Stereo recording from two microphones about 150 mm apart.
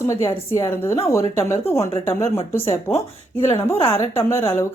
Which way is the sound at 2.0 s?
15° left (ahead or behind).